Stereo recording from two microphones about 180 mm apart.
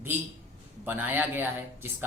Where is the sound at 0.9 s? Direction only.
10° right (ahead or behind).